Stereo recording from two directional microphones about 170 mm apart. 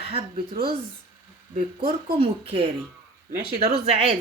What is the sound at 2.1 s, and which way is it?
A woman's voice, 35° right (ahead or behind).